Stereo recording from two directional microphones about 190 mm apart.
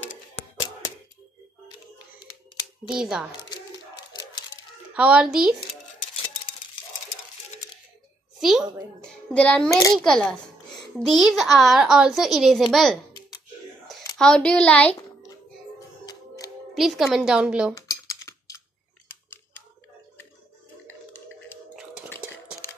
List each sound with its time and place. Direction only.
0.1 s hands: 40° left (ahead or behind)
2.9 s a woman's voice: 5° right (ahead or behind)
3.3 s a sound: 20° left (ahead or behind)
4.9 s a woman's voice: 5° right (ahead or behind)
8.4 s a sound: centre (ahead or behind)
9.3 s a woman's voice: 5° left (ahead or behind)
9.7 s a child's voice: 15° left (ahead or behind)
10.0 s a woman's voice: 5° left (ahead or behind)
14.1 s a woman's voice: 5° left (ahead or behind)
16.7 s a woman's voice: centre (ahead or behind)
17.7 s typing: 20° left (ahead or behind)